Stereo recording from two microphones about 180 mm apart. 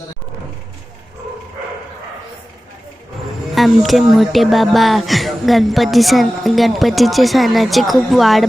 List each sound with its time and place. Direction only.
3.5 s speech: centre (ahead or behind)